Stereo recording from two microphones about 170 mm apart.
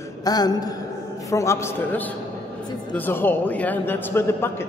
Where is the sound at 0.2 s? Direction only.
20° left (ahead or behind).